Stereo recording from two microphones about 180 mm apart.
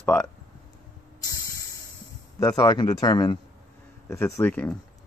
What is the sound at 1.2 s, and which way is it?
Spray, 20° left (ahead or behind).